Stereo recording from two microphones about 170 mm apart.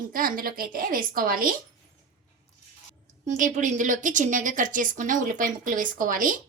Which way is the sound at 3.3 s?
45° right (ahead or behind).